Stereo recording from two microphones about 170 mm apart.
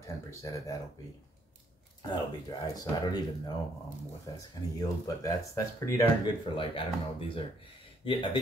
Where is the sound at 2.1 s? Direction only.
25° left (ahead or behind).